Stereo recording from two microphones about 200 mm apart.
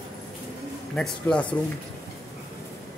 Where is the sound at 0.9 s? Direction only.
5° left (ahead or behind).